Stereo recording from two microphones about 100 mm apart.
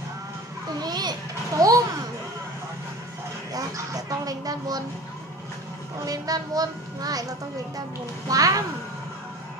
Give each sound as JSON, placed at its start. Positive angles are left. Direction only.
{"t": 0.7, "sound": "children playing", "side_deg": -45}
{"t": 3.5, "sound": "a sound", "side_deg": -35}
{"t": 6.0, "sound": "a woman's voice", "side_deg": -40}